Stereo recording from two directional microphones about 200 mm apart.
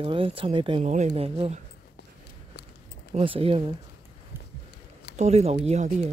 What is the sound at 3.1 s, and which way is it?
Speech, 30° right (ahead or behind).